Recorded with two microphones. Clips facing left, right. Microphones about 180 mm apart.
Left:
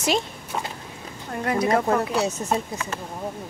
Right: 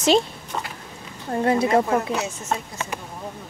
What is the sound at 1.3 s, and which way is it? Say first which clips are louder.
Speech: right 4 dB; 30° right (ahead or behind).